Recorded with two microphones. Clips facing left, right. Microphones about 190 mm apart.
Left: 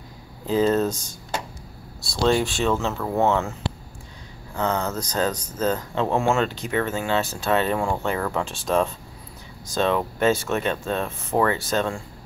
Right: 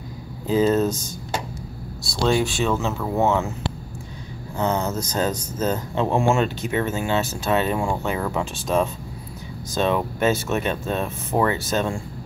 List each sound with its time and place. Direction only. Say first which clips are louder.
0.5 s speech: right 1 dB; 5° right (ahead or behind)
2.2 s speech: even; centre (ahead or behind)
4.6 s speech: right 2 dB; 20° right (ahead or behind)
7.6 s speech: even; 10° right (ahead or behind)